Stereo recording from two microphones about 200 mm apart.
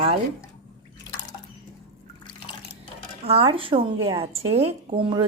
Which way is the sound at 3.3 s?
30° right (ahead or behind).